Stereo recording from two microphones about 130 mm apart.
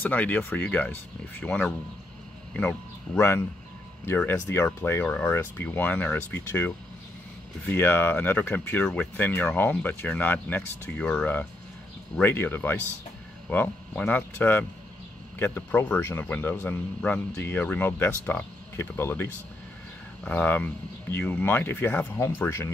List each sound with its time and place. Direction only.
0.0 s speech: 15° left (ahead or behind)
3.2 s speech: 20° left (ahead or behind)
4.6 s speech: 15° left (ahead or behind)